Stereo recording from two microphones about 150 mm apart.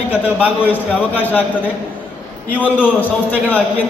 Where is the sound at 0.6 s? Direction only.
10° left (ahead or behind).